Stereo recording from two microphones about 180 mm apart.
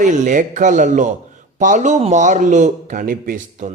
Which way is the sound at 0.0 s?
45° right (ahead or behind).